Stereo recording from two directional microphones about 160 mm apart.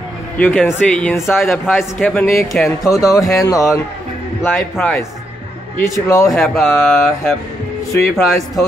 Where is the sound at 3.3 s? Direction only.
20° left (ahead or behind).